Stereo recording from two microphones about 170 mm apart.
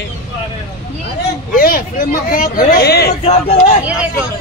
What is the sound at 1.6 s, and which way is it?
Speech, 55° left (ahead or behind).